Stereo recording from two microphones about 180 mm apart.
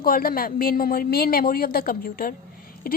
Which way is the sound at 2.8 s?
55° left (ahead or behind).